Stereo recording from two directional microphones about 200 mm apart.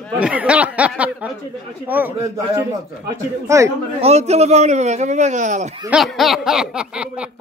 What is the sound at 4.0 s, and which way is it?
A man's voice, 35° right (ahead or behind).